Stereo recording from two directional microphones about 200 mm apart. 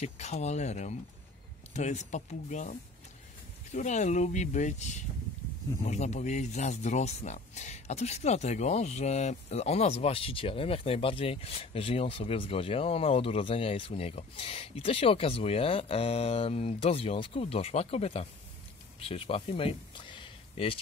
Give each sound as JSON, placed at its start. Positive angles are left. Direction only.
{"t": 0.0, "sound": "speech", "side_deg": 35}